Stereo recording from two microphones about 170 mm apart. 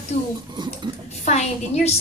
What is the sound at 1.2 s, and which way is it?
Speech, 40° left (ahead or behind).